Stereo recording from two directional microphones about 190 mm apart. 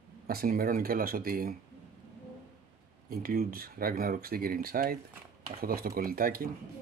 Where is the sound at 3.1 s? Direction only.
50° right (ahead or behind).